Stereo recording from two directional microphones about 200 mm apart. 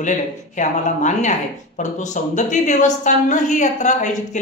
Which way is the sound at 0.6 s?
35° left (ahead or behind).